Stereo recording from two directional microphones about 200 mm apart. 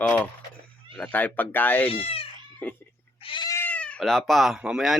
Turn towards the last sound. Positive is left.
turn(degrees=-5)  # may be behind; listen again after turning